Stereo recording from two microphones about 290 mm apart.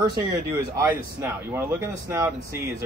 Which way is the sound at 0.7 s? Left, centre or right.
Centre.